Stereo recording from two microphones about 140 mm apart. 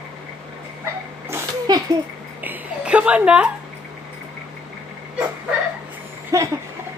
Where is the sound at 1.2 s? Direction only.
20° right (ahead or behind).